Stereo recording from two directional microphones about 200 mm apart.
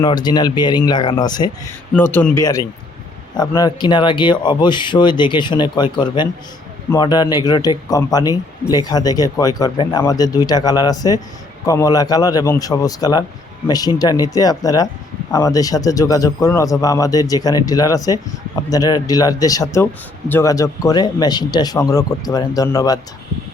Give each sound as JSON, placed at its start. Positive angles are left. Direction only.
{"t": 0.0, "sound": "speech", "side_deg": 20}
{"t": 1.9, "sound": "speech", "side_deg": 10}